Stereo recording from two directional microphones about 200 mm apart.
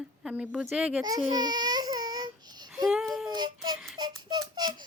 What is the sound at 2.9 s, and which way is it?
Child singing, centre (ahead or behind).